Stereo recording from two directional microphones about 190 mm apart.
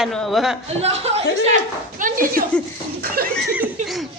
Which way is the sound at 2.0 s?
45° right (ahead or behind).